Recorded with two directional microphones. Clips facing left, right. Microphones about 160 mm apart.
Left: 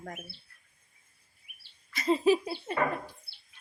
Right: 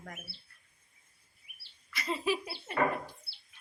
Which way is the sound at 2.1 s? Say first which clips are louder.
Left 8 dB; 30° left (ahead or behind).